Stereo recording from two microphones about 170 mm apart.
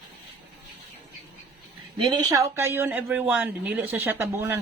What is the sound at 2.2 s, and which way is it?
Speech, 20° right (ahead or behind).